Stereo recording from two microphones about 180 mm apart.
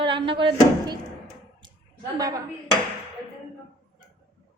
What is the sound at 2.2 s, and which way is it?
Speech, 20° right (ahead or behind).